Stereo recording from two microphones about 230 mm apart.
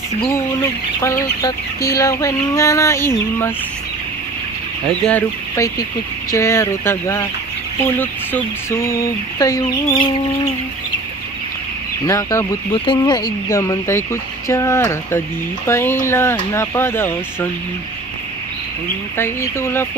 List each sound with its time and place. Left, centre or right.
0.2 s speech: centre
5.0 s speech: centre
12.1 s speech: centre
19.1 s speech: centre